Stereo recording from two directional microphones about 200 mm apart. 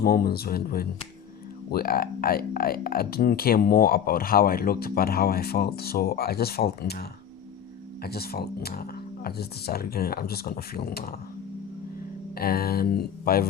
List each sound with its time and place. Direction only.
0.0 s speech: 50° left (ahead or behind)
8.0 s speech: 50° left (ahead or behind)
12.3 s speech: 50° left (ahead or behind)